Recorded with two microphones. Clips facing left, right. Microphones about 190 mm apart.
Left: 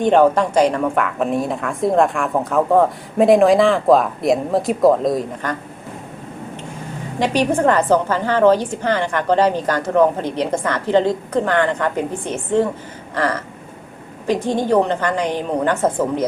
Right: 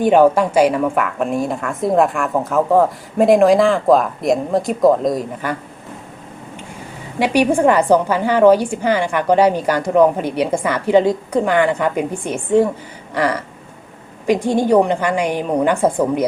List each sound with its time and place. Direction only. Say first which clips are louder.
0.0 s a woman's voice: right 2 dB; 10° right (ahead or behind)
7.2 s a woman's voice: right 3 dB; 10° right (ahead or behind)